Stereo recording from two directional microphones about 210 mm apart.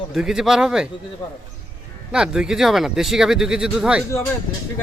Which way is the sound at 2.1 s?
5° right (ahead or behind).